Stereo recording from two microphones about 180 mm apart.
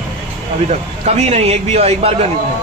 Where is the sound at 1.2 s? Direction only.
35° right (ahead or behind).